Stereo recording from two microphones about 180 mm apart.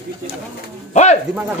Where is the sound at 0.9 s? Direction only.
40° left (ahead or behind).